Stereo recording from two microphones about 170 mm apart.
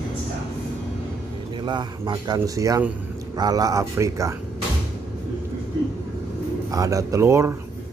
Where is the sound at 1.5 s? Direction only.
25° right (ahead or behind).